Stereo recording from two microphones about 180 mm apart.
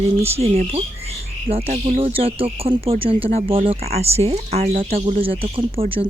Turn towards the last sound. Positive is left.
turn(degrees=-30)  # may be behind; listen again after turning